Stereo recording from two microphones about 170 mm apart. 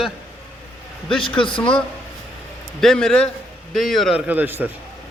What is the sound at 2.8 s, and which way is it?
A man's voice, 5° left (ahead or behind).